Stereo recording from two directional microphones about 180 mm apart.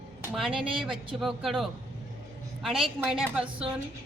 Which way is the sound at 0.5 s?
30° right (ahead or behind).